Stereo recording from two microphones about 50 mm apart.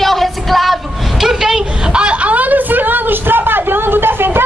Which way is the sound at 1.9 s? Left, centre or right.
Right.